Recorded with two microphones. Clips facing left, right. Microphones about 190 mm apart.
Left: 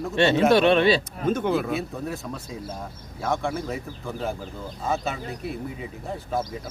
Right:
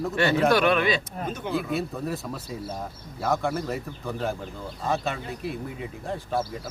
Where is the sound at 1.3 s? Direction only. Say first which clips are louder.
Left 6 dB; 55° left (ahead or behind).